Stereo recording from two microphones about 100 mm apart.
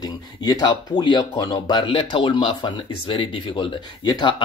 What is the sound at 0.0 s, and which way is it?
Speech, 45° left (ahead or behind).